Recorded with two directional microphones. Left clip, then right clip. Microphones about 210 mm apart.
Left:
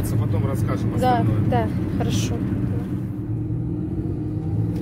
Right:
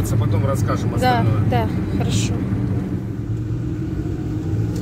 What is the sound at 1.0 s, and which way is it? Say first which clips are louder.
Speech: right 1 dB; 5° left (ahead or behind).